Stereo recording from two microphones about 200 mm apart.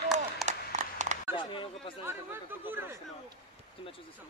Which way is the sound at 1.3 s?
25° left (ahead or behind).